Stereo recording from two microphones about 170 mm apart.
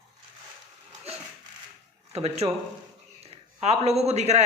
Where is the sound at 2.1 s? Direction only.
40° right (ahead or behind).